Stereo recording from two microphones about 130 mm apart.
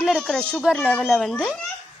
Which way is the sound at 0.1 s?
5° left (ahead or behind).